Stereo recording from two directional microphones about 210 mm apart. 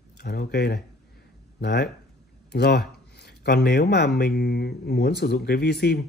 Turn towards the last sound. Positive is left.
turn(degrees=50)  # may be behind; listen again after turning